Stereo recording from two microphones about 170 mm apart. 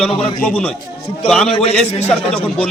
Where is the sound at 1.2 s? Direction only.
5° left (ahead or behind).